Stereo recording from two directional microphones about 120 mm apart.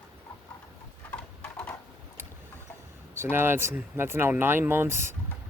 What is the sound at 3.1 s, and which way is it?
Speech, 20° right (ahead or behind).